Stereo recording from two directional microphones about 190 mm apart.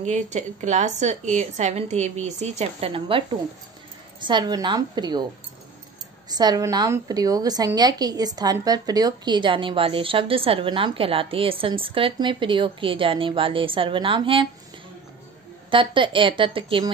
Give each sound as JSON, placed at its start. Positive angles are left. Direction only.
{"t": 0.0, "sound": "a woman's voice", "side_deg": -40}
{"t": 6.2, "sound": "a woman's voice", "side_deg": -20}
{"t": 15.7, "sound": "a woman's voice", "side_deg": -25}